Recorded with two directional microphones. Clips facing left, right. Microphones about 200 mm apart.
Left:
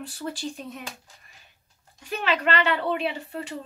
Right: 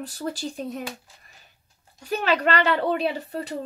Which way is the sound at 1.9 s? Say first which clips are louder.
Right 3 dB; 40° right (ahead or behind).